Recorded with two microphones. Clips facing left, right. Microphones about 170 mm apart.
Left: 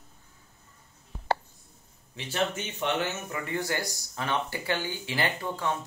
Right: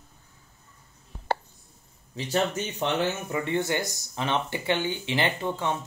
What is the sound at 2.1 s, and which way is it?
Speech, 40° right (ahead or behind).